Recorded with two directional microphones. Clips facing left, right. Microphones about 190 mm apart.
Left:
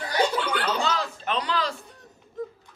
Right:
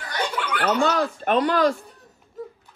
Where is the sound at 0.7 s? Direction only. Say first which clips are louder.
Right 6 dB; 55° right (ahead or behind).